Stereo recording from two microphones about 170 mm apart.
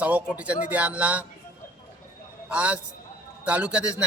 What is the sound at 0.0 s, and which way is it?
A man's voice, 10° right (ahead or behind).